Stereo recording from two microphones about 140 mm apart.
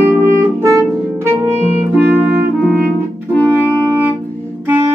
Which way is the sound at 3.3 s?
15° left (ahead or behind).